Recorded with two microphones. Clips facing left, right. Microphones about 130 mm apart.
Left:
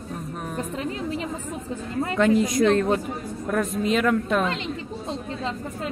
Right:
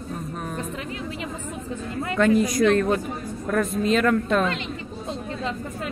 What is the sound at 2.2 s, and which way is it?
Speech, 20° left (ahead or behind).